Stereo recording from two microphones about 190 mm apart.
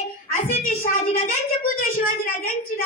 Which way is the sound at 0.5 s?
35° left (ahead or behind).